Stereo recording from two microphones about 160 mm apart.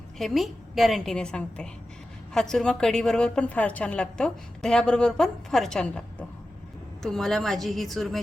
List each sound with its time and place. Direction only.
0.2 s a woman's voice: centre (ahead or behind)